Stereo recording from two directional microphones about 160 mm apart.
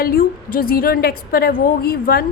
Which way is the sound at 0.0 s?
65° left (ahead or behind).